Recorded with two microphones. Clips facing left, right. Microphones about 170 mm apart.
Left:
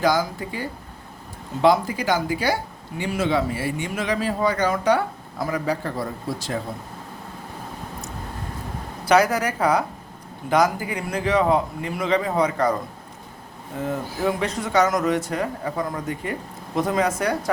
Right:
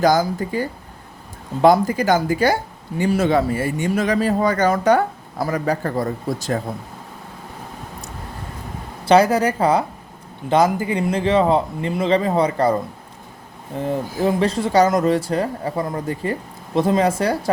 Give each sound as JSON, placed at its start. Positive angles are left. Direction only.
{"t": 0.0, "sound": "speech", "side_deg": -45}
{"t": 9.0, "sound": "speech", "side_deg": -30}
{"t": 13.8, "sound": "speech", "side_deg": -30}